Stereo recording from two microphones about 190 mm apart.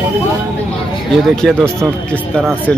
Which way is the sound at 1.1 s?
Centre (ahead or behind).